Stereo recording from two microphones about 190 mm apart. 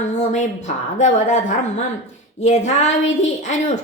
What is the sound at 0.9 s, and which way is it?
A woman's voice, 40° left (ahead or behind).